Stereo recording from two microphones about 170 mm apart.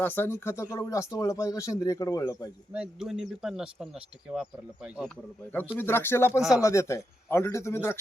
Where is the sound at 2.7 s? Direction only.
5° right (ahead or behind).